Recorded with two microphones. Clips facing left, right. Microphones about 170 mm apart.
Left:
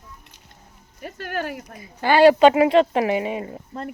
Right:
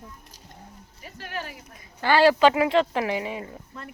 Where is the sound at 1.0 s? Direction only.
60° left (ahead or behind).